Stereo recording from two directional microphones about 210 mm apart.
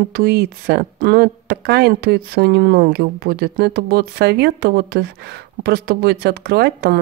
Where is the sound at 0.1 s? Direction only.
50° right (ahead or behind).